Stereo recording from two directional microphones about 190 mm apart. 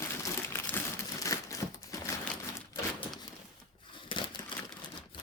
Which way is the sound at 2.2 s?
5° left (ahead or behind).